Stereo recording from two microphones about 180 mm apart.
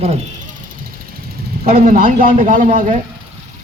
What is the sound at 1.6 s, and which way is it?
A man's voice, 50° right (ahead or behind).